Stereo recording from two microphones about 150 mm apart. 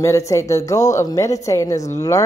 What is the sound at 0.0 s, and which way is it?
A woman's voice, 20° left (ahead or behind).